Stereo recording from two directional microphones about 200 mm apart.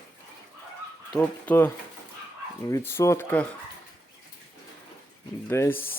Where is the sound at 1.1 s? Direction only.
10° left (ahead or behind).